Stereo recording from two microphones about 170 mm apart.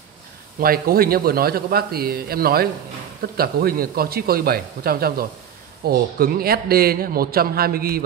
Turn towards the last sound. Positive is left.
turn(degrees=-60)  # may be behind; listen again after turning